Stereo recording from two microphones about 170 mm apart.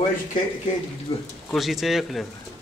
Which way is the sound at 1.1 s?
30° left (ahead or behind).